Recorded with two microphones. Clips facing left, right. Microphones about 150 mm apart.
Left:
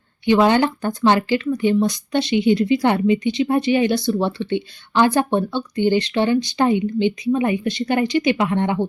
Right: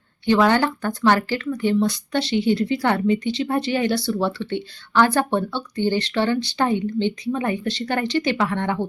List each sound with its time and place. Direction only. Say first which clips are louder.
0.3 s speech: left 2 dB; 20° left (ahead or behind)